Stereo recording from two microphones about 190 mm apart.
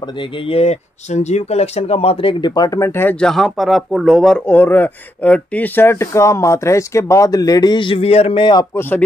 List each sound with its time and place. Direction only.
0.5 s speech: 35° left (ahead or behind)